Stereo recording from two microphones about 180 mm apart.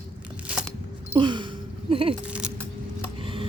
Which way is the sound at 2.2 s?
5° right (ahead or behind).